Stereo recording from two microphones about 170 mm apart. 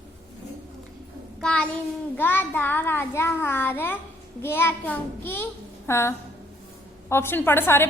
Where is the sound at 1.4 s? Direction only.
5° left (ahead or behind).